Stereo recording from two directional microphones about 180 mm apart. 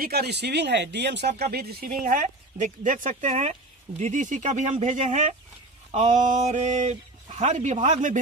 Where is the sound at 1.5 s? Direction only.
55° right (ahead or behind).